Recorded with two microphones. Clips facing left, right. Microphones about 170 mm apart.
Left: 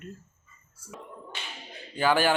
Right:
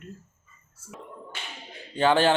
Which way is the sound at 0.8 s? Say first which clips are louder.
Right 1 dB; 25° right (ahead or behind).